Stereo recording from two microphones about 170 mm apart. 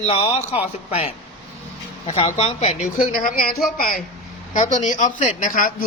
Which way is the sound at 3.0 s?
55° left (ahead or behind).